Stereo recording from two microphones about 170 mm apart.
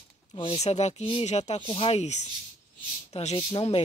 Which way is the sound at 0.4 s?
35° left (ahead or behind).